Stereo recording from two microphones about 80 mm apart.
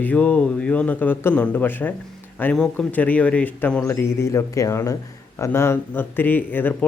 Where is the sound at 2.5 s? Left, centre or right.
Centre.